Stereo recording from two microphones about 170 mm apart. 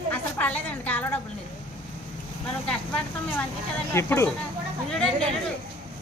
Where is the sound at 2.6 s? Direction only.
5° left (ahead or behind).